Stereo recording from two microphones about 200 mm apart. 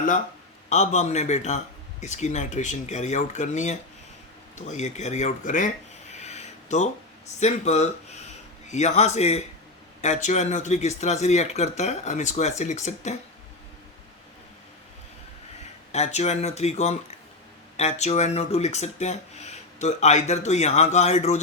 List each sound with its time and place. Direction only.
0.7 s speech: 35° left (ahead or behind)
6.1 s a sound: 35° left (ahead or behind)
7.3 s speech: 35° left (ahead or behind)
15.9 s speech: 35° left (ahead or behind)